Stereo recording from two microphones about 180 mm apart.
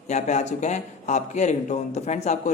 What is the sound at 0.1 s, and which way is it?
A man's voice, 40° left (ahead or behind).